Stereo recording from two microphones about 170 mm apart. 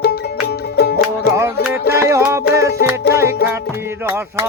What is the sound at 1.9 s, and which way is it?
Music, 15° right (ahead or behind).